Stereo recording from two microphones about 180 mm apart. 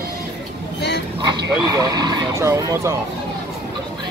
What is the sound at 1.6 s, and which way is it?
Speech, 20° right (ahead or behind).